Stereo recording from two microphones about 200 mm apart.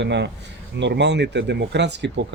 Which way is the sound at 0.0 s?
60° right (ahead or behind).